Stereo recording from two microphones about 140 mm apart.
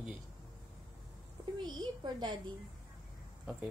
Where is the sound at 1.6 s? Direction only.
30° right (ahead or behind).